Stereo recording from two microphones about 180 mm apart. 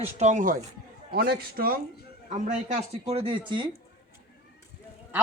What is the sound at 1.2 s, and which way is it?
Speech, 60° right (ahead or behind).